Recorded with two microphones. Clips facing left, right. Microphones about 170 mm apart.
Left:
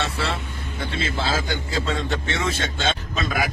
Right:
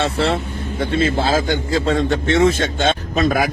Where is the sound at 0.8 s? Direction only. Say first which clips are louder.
Right 9 dB; 45° right (ahead or behind).